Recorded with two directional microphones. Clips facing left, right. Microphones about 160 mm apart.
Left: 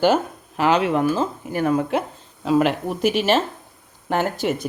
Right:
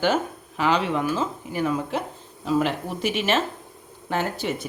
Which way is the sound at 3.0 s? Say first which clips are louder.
Left 5 dB; 40° left (ahead or behind).